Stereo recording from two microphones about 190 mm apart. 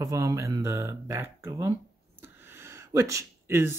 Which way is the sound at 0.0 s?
15° right (ahead or behind).